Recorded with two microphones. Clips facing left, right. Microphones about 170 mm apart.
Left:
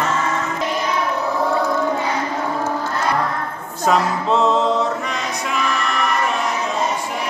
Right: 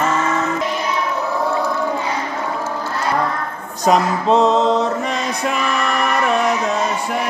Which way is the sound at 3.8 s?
15° right (ahead or behind).